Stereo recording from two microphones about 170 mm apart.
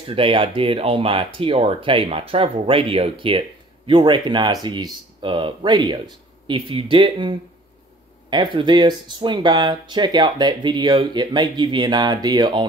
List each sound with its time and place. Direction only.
0.1 s speech: 30° right (ahead or behind)